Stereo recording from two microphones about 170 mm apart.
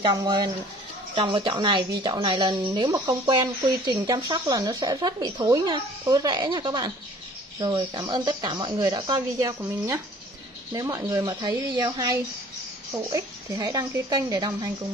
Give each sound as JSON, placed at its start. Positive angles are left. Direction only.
{"t": 0.0, "sound": "speech", "side_deg": -20}